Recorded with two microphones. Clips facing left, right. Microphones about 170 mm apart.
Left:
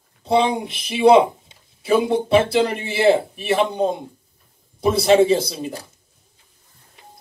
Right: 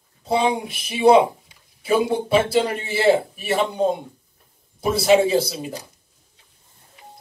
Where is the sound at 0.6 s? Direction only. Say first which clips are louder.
Left 2 dB; 30° left (ahead or behind).